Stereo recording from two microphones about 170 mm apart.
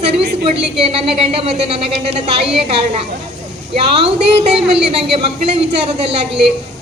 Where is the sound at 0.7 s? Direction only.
35° right (ahead or behind).